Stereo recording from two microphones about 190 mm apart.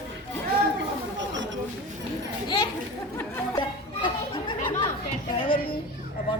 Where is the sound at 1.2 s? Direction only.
75° right (ahead or behind).